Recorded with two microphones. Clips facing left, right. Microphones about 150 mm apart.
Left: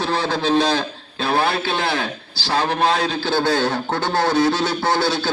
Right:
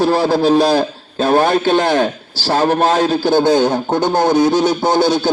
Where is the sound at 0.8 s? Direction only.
40° right (ahead or behind).